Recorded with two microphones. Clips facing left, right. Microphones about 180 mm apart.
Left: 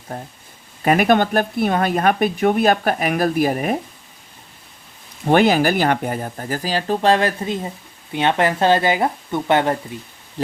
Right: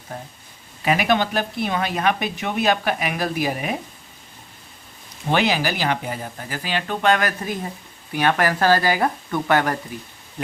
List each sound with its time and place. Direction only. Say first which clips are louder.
0.8 s speech: left 5 dB; 50° left (ahead or behind)
5.3 s speech: left 6 dB; 50° left (ahead or behind); by 10.0 s 25° left (ahead or behind)